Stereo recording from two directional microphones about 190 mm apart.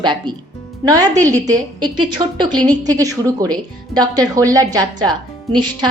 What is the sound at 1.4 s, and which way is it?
A woman's voice, 20° right (ahead or behind).